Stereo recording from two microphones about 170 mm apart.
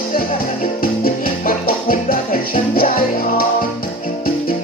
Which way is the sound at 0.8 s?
60° left (ahead or behind).